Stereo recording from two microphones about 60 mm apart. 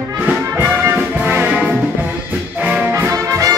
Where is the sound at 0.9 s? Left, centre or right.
Right.